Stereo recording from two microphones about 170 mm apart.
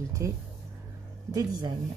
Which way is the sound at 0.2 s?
15° right (ahead or behind).